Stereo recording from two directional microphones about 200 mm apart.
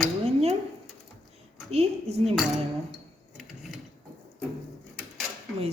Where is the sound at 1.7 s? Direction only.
30° right (ahead or behind).